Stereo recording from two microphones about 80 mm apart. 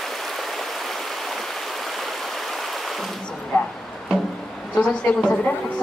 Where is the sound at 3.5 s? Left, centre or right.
Centre.